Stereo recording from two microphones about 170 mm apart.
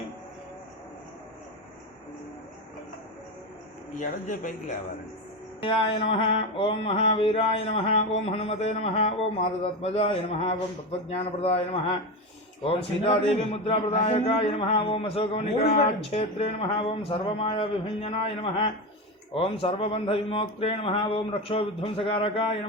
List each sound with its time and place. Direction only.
4.0 s speech: 50° left (ahead or behind)
5.5 s a man's voice: 30° left (ahead or behind)